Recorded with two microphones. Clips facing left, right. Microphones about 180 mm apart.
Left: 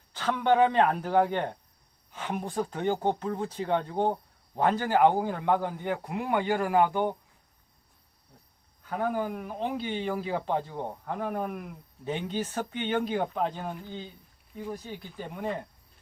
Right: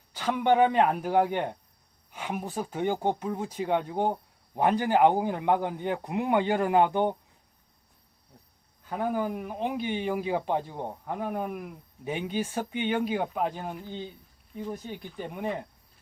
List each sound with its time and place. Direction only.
0.1 s a man's voice: 10° right (ahead or behind)
8.9 s a man's voice: 15° right (ahead or behind)